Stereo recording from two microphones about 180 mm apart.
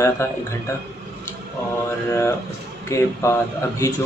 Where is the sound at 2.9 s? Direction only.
15° left (ahead or behind).